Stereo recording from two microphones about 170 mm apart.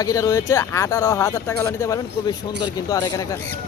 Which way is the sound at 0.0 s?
20° left (ahead or behind).